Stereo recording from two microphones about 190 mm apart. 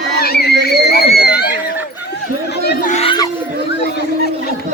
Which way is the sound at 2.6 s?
40° left (ahead or behind).